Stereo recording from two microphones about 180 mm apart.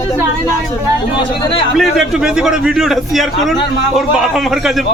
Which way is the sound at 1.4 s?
30° left (ahead or behind).